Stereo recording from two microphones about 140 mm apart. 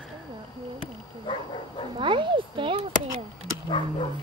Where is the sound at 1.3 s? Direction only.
35° left (ahead or behind).